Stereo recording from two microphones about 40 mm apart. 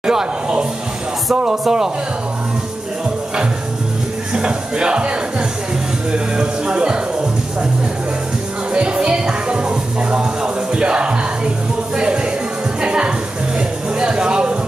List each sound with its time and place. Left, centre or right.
0.0 s a sound: centre
1.3 s speech: right
4.3 s speech: right
6.1 s speech: right
8.7 s music: right
12.8 s music: right